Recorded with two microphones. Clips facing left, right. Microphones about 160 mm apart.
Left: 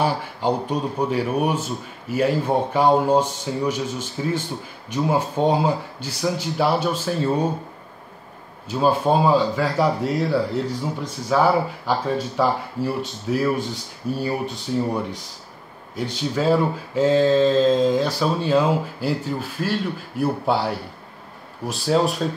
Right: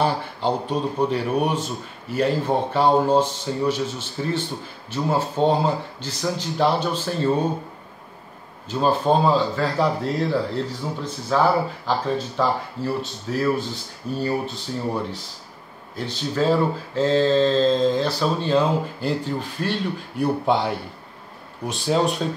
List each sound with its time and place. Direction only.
0.0 s speech: 10° left (ahead or behind)
8.6 s speech: 10° left (ahead or behind)